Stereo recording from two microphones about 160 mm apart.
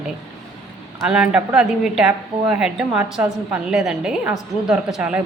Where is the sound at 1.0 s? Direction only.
5° right (ahead or behind).